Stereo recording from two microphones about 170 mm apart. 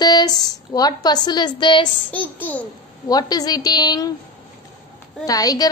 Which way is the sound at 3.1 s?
20° left (ahead or behind).